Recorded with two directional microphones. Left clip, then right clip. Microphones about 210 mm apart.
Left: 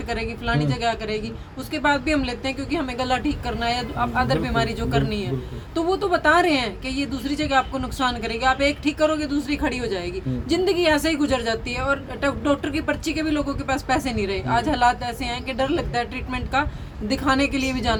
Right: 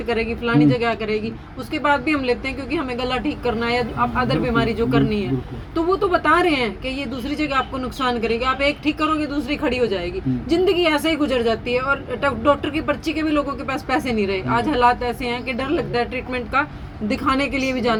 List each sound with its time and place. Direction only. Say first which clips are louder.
0.1 s speech: right 5 dB; 20° left (ahead or behind)